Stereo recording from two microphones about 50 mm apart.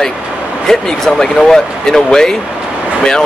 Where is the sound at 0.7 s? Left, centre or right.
Centre.